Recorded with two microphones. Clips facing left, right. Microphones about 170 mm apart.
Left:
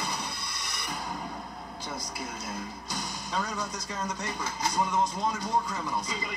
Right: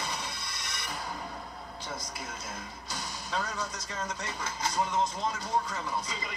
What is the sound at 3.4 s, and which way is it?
Speech, 15° left (ahead or behind).